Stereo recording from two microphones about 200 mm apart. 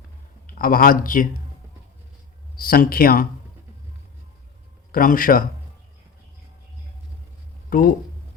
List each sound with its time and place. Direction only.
0.4 s speech: 45° left (ahead or behind)
2.6 s speech: 45° left (ahead or behind)
4.9 s speech: 45° left (ahead or behind)
7.7 s speech: 45° left (ahead or behind)